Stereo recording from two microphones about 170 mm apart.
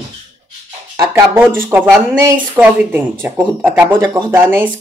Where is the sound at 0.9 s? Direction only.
15° right (ahead or behind).